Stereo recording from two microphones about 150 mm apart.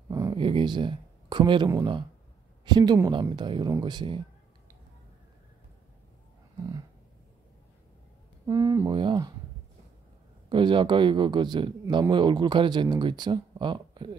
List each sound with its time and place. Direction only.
0.1 s a sound: 25° right (ahead or behind)
0.4 s speech: 35° right (ahead or behind)
8.5 s speech: 25° right (ahead or behind)
10.5 s speech: 35° right (ahead or behind)